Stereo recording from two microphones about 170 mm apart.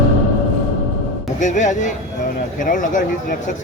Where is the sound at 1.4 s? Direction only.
45° left (ahead or behind).